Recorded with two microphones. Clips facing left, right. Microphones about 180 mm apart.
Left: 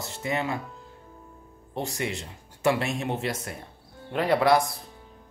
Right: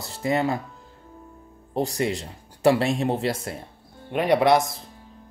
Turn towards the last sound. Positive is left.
turn(degrees=-20)  # may be behind; listen again after turning